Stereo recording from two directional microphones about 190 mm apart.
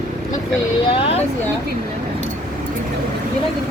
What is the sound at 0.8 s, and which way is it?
Speech, 30° left (ahead or behind).